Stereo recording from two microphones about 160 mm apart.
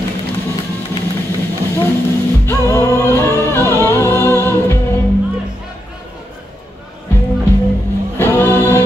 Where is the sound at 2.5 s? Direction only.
20° left (ahead or behind).